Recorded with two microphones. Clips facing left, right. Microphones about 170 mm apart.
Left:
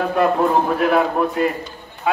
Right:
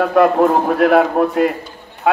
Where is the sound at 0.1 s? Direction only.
70° right (ahead or behind).